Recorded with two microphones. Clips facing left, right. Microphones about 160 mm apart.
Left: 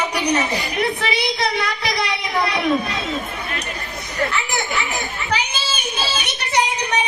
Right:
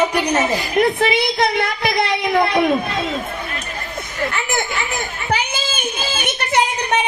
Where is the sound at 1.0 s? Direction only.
50° right (ahead or behind).